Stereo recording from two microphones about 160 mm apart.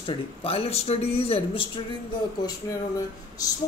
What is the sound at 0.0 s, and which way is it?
Speech, 40° left (ahead or behind).